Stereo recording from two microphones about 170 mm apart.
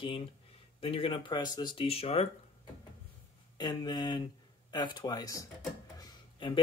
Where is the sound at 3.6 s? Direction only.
25° left (ahead or behind).